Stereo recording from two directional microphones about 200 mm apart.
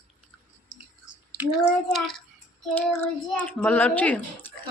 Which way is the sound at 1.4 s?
Centre (ahead or behind).